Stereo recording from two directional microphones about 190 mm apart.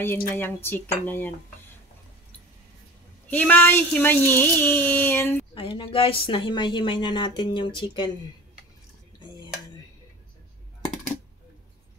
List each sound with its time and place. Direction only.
0.4 s speech: 10° left (ahead or behind)
3.3 s speech: 10° left (ahead or behind)
5.5 s speech: 25° left (ahead or behind)